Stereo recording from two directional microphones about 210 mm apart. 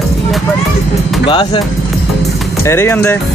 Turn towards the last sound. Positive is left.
turn(degrees=10)  # may be behind; listen again after turning